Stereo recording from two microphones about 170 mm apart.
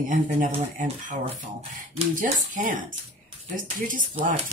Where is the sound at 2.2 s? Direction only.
50° right (ahead or behind).